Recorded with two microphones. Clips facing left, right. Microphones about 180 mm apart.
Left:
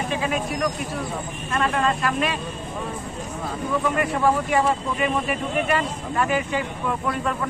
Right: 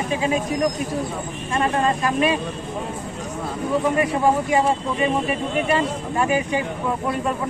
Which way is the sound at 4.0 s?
15° right (ahead or behind).